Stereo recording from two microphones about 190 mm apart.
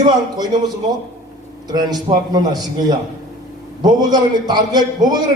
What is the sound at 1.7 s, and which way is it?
Speech, 20° right (ahead or behind).